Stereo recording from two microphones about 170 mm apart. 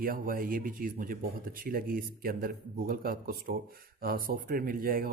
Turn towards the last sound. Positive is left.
turn(degrees=-60)  # may be behind; listen again after turning